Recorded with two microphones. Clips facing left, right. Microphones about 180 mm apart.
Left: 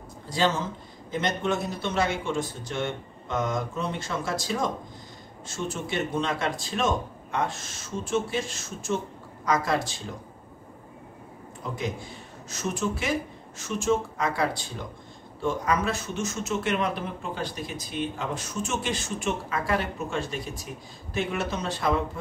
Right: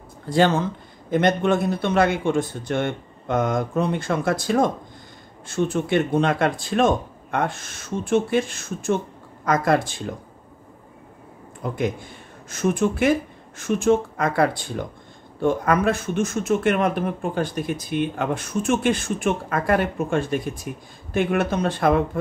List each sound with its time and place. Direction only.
0.3 s speech: 60° right (ahead or behind)
11.6 s speech: 55° right (ahead or behind)